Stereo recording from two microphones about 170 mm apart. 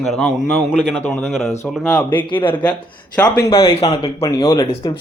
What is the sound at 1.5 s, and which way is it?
Speech, 10° left (ahead or behind).